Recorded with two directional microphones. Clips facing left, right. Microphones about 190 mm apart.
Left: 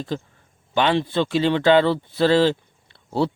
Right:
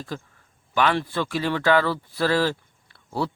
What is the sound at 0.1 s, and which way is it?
Speech, 25° left (ahead or behind).